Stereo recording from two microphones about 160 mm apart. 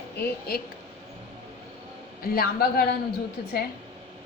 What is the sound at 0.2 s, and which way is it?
Speech, 75° left (ahead or behind).